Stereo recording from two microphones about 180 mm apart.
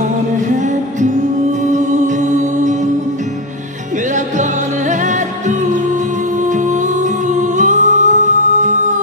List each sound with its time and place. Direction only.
1.7 s music: 45° right (ahead or behind)
7.3 s music: 45° right (ahead or behind)